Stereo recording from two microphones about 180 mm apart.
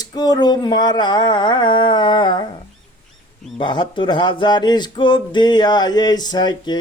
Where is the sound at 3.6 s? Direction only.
25° left (ahead or behind).